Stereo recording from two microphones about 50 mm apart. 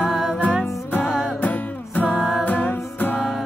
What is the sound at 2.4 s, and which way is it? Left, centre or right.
Music, left.